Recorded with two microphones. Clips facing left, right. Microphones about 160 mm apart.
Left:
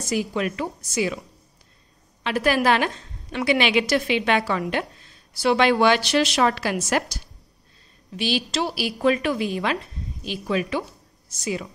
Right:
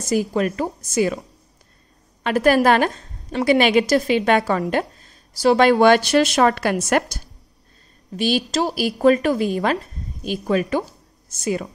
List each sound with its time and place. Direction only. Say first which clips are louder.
0.0 s a woman's voice: right 4 dB; 45° right (ahead or behind)
2.2 s a woman's voice: right 5 dB; 45° right (ahead or behind)